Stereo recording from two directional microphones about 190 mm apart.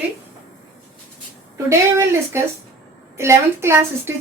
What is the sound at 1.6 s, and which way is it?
Speech, 15° right (ahead or behind).